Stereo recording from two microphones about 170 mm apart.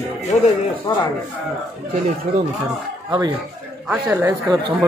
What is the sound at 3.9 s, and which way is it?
Speech, 10° right (ahead or behind).